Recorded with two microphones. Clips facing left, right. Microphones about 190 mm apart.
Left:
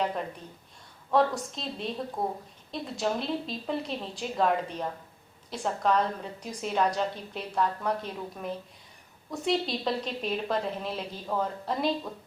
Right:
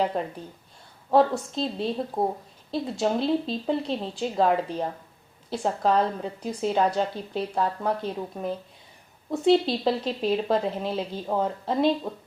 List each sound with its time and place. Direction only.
0.2 s a woman's voice: 35° right (ahead or behind)